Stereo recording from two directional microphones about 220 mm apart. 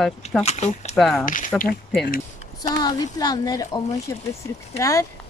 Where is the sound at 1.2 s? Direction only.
35° left (ahead or behind).